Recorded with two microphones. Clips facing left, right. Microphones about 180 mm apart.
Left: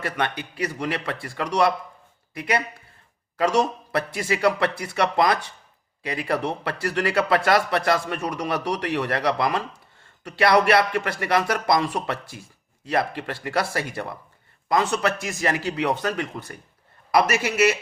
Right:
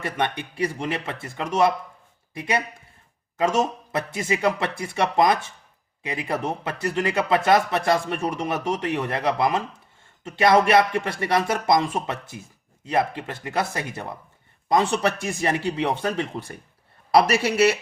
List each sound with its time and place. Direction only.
0.0 s a man's voice: 25° right (ahead or behind)
14.8 s a man's voice: 30° right (ahead or behind)